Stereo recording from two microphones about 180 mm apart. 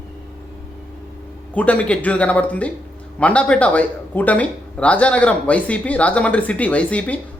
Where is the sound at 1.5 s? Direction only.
5° left (ahead or behind).